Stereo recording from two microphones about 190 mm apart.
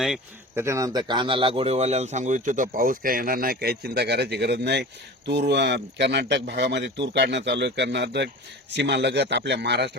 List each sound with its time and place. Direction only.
0.5 s speech: 15° right (ahead or behind); by 10.0 s 65° right (ahead or behind)